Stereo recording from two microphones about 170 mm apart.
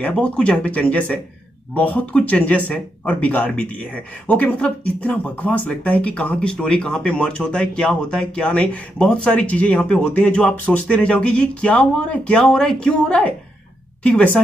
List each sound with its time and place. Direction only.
0.0 s speech: 5° left (ahead or behind)